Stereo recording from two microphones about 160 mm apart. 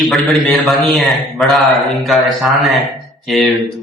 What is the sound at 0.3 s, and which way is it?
A man's voice, centre (ahead or behind).